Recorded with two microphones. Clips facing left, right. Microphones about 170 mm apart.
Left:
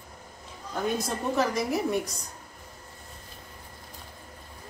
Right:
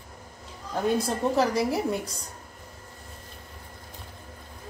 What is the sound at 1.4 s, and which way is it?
Speech, 30° right (ahead or behind).